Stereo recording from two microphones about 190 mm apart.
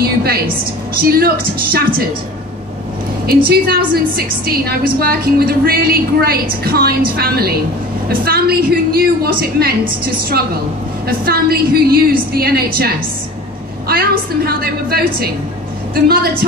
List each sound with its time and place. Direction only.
0.0 s a sound: 55° right (ahead or behind)
1.0 s a woman's voice: 55° right (ahead or behind)
3.4 s a woman's voice: 50° right (ahead or behind)